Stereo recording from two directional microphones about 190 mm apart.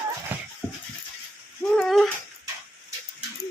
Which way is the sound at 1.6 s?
5° left (ahead or behind).